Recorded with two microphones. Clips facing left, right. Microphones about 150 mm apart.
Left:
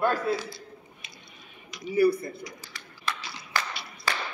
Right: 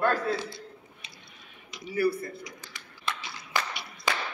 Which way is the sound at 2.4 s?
20° right (ahead or behind).